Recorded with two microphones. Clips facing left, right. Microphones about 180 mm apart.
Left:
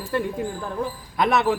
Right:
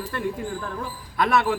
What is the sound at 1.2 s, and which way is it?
Speech, 20° left (ahead or behind).